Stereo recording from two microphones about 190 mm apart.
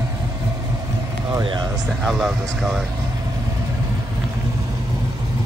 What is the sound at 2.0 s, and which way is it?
Speech, centre (ahead or behind).